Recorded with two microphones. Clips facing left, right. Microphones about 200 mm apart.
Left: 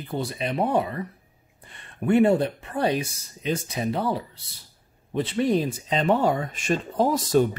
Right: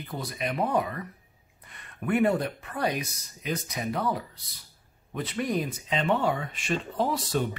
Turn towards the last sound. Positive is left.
turn(degrees=45)  # may be behind; listen again after turning